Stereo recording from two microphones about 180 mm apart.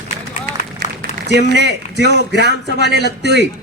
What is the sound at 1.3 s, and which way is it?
A man's voice, 70° right (ahead or behind).